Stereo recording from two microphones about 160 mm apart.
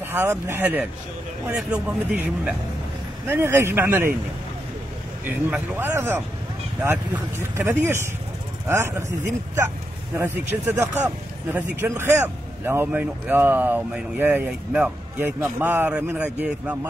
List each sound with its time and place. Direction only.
0.0 s a man's voice: 15° right (ahead or behind)
5.2 s a man's voice: 10° right (ahead or behind)
7.5 s a man's voice: 15° right (ahead or behind)
10.1 s a man's voice: 10° right (ahead or behind)